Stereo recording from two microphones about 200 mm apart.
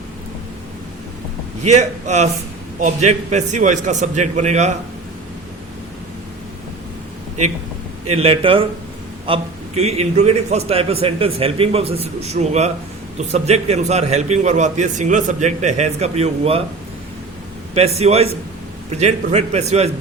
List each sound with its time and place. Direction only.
1.6 s a man's voice: 35° right (ahead or behind)
8.1 s a man's voice: 30° right (ahead or behind)
17.7 s a man's voice: 30° right (ahead or behind)